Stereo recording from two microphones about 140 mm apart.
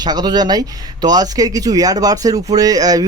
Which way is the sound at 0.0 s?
30° right (ahead or behind).